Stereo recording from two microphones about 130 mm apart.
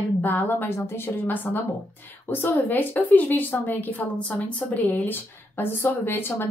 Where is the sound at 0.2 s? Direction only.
15° left (ahead or behind).